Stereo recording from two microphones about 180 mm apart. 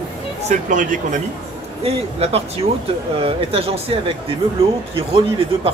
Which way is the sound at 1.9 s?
35° right (ahead or behind).